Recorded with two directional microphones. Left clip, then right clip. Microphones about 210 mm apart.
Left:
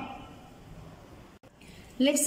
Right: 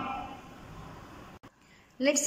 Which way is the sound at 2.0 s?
10° left (ahead or behind).